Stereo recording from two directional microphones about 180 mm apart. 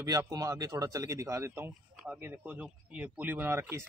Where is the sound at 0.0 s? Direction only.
20° right (ahead or behind).